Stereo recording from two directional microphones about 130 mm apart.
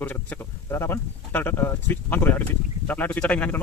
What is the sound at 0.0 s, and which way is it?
Speech, 15° left (ahead or behind).